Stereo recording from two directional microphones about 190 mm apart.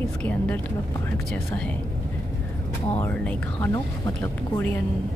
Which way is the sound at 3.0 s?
10° left (ahead or behind).